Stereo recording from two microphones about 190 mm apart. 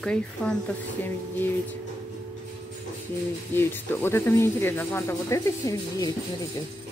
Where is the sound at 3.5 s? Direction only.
10° left (ahead or behind).